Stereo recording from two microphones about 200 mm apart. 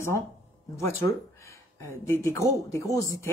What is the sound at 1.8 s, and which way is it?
A woman's voice, 15° left (ahead or behind).